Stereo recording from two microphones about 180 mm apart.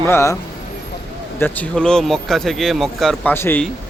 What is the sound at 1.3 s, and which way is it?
Speech, 10° left (ahead or behind).